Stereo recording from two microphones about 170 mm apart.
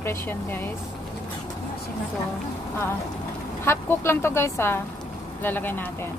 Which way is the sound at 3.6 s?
15° left (ahead or behind).